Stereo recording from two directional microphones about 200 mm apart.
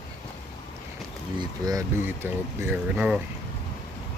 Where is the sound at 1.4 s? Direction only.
15° right (ahead or behind).